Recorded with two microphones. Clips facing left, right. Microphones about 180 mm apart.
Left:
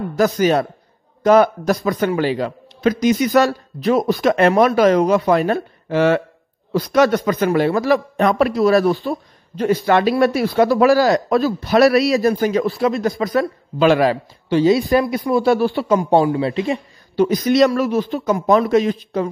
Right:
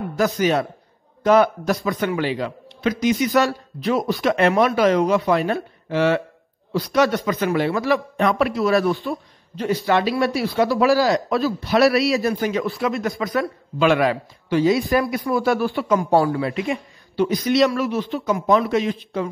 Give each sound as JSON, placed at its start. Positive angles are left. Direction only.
{"t": 0.2, "sound": "speech", "side_deg": 40}
{"t": 9.0, "sound": "speech", "side_deg": 50}
{"t": 17.1, "sound": "speech", "side_deg": 45}